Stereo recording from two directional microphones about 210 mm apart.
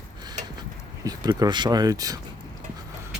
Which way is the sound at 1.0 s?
15° right (ahead or behind).